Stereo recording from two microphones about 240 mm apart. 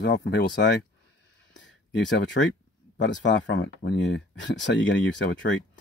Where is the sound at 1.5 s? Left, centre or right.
Left.